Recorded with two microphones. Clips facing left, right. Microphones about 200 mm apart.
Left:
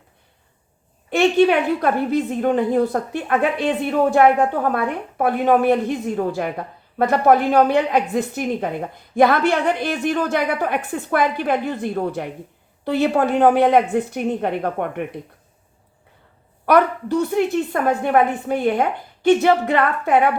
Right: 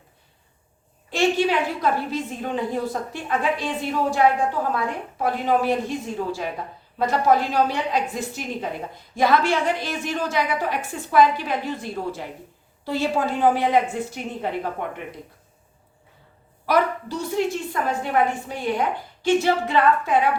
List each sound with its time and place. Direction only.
1.1 s a woman's voice: 60° left (ahead or behind)
16.6 s a woman's voice: 60° left (ahead or behind)